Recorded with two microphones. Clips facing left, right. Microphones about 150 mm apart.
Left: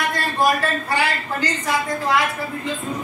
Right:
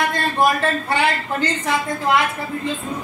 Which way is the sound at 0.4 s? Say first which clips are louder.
Right 1 dB; 25° right (ahead or behind).